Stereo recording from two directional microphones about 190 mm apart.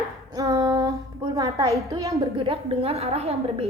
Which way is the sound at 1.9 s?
20° right (ahead or behind).